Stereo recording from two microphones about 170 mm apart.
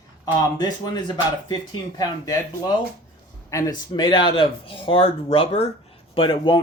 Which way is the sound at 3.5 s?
25° left (ahead or behind).